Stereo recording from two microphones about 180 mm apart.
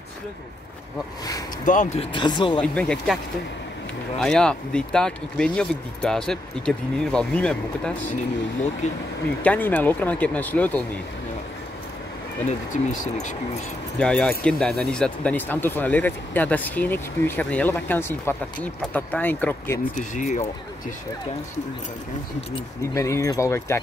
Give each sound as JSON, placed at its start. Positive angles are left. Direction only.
{"t": 1.7, "sound": "speech", "side_deg": 45}
{"t": 2.1, "sound": "speech", "side_deg": 25}
{"t": 2.6, "sound": "speech", "side_deg": 5}
{"t": 4.2, "sound": "speech", "side_deg": 5}
{"t": 9.4, "sound": "speech", "side_deg": 10}
{"t": 12.4, "sound": "speech", "side_deg": 45}
{"t": 13.9, "sound": "speech", "side_deg": 5}
{"t": 20.0, "sound": "speech", "side_deg": 40}
{"t": 22.8, "sound": "speech", "side_deg": 15}